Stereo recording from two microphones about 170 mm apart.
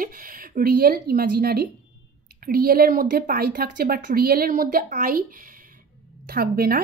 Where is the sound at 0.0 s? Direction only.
55° right (ahead or behind).